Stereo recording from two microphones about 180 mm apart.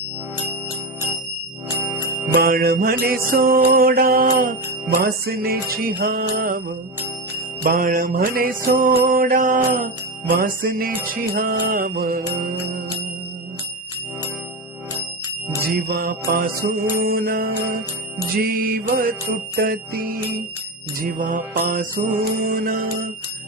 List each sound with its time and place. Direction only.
2.3 s music: 55° right (ahead or behind)
7.6 s mantra: 50° right (ahead or behind)
11.1 s music: 55° right (ahead or behind)
15.7 s music: 55° right (ahead or behind)
21.0 s mantra: 45° right (ahead or behind)